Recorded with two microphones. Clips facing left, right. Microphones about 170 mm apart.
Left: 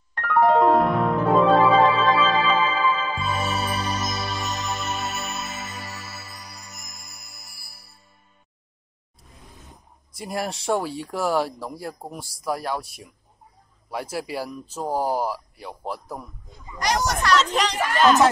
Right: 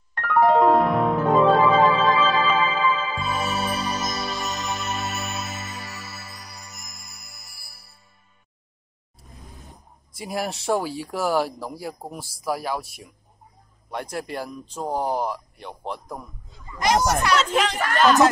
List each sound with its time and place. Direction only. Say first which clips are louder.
0.1 s keyboard: even; centre (ahead or behind)
3.2 s music: even; centre (ahead or behind)
10.1 s speech: even; centre (ahead or behind)
16.8 s speech: right 3 dB; 20° right (ahead or behind)
17.5 s speech: right 1 dB; centre (ahead or behind)